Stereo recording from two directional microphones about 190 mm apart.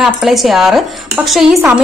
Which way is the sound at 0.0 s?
Centre (ahead or behind).